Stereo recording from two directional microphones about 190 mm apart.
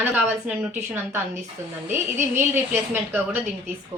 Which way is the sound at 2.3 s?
10° right (ahead or behind).